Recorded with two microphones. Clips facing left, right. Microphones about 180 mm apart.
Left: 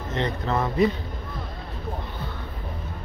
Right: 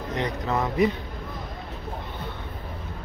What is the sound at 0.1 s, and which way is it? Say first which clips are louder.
Speech: left 1 dB; 15° right (ahead or behind).